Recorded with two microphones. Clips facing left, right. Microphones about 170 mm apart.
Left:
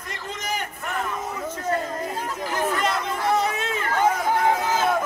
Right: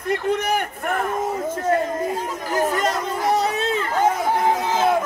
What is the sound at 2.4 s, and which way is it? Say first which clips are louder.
Chatter: right 3 dB; 45° right (ahead or behind).